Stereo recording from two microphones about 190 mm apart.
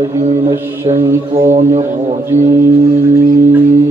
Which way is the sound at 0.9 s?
15° right (ahead or behind).